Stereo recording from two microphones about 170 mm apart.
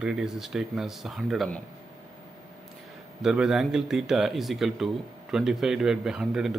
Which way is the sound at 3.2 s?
5° right (ahead or behind).